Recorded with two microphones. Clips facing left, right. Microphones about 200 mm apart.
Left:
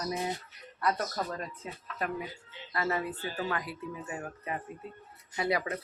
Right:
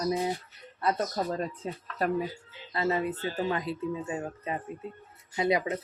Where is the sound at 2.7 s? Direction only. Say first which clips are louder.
Right 4 dB; 20° right (ahead or behind).